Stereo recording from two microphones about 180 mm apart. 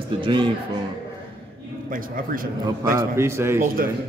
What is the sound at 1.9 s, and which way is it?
A man's voice, 50° right (ahead or behind).